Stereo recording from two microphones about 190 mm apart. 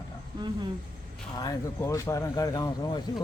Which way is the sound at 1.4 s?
20° left (ahead or behind).